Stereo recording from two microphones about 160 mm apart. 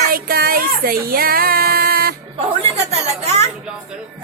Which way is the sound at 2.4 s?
40° right (ahead or behind).